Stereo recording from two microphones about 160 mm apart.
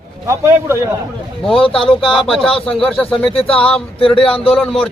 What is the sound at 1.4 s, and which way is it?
Speech, 35° left (ahead or behind).